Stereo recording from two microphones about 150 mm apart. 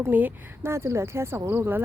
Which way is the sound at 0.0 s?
10° right (ahead or behind).